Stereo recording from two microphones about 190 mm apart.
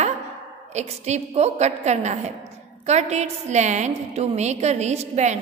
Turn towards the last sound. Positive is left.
turn(degrees=-35)  # may be behind; listen again after turning